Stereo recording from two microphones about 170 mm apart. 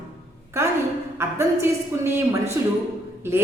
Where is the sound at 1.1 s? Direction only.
15° right (ahead or behind).